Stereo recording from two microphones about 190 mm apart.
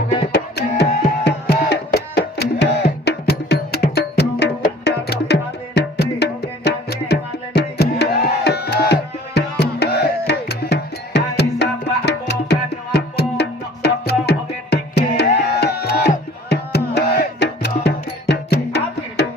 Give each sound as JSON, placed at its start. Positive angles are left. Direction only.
{"t": 0.3, "sound": "music", "side_deg": 60}